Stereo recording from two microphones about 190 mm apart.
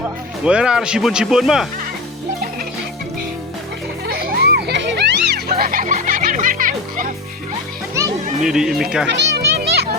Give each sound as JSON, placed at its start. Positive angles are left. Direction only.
{"t": 0.4, "sound": "speech", "side_deg": -5}
{"t": 4.0, "sound": "music", "side_deg": -50}
{"t": 8.4, "sound": "speech", "side_deg": -5}
{"t": 9.1, "sound": "children playing", "side_deg": -65}